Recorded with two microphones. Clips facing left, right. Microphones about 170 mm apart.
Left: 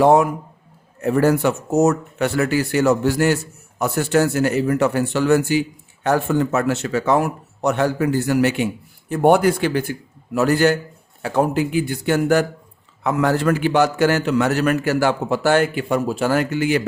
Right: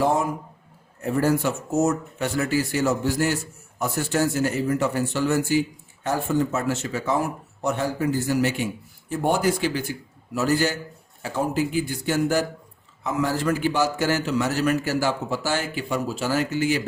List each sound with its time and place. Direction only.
0.0 s a man's voice: 70° left (ahead or behind)